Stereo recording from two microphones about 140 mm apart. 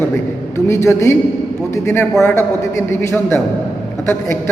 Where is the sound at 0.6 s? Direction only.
20° left (ahead or behind).